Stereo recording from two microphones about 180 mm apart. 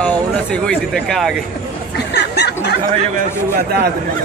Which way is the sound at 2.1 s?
70° left (ahead or behind).